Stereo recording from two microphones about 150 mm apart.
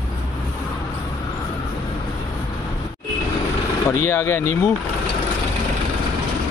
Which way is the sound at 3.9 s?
20° left (ahead or behind).